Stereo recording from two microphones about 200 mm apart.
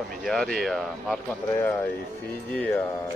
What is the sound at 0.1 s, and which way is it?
Speech, centre (ahead or behind).